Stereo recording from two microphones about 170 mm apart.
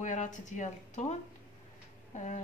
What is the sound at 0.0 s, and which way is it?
Speech, 45° left (ahead or behind).